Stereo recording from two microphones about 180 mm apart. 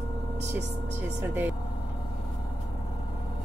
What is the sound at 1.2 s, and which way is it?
Speech, 10° right (ahead or behind).